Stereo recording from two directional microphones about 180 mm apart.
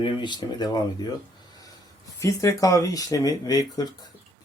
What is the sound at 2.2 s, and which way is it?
Speech, 15° left (ahead or behind).